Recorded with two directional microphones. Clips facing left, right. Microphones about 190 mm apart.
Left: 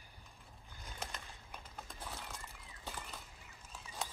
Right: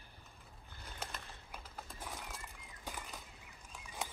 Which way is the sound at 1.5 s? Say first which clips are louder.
Right 1 dB; 5° right (ahead or behind).